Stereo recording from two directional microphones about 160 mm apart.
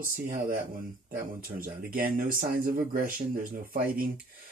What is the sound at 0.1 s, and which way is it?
Speech, 60° right (ahead or behind).